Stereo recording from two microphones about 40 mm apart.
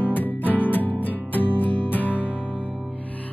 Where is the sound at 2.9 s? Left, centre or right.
Left.